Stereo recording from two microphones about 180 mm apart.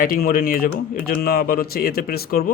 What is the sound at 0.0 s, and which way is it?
Speech, 55° left (ahead or behind).